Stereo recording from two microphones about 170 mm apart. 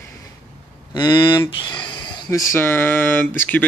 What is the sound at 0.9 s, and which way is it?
Speech, 25° left (ahead or behind).